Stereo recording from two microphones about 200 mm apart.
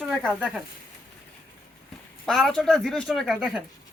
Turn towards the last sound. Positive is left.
turn(degrees=0)  # may be behind; listen again after turning